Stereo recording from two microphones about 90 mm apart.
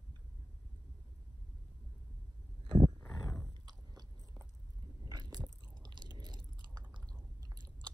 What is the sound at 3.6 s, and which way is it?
Biting, 45° right (ahead or behind).